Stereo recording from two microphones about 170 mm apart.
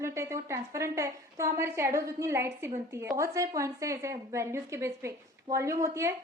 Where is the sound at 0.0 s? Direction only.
15° right (ahead or behind).